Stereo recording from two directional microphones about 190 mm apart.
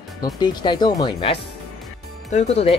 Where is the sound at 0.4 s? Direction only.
20° left (ahead or behind).